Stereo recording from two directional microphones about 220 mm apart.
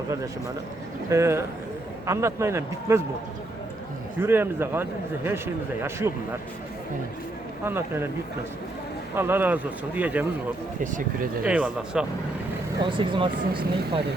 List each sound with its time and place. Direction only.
1.1 s a man's voice: 10° right (ahead or behind)
4.2 s a man's voice: 10° right (ahead or behind)
7.6 s a man's voice: 10° right (ahead or behind)
9.1 s a man's voice: 10° right (ahead or behind)
11.4 s speech: 5° right (ahead or behind)
12.8 s speech: 20° right (ahead or behind)